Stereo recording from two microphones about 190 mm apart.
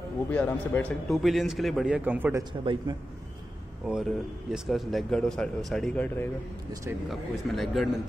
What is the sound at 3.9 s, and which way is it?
Speech, 5° right (ahead or behind).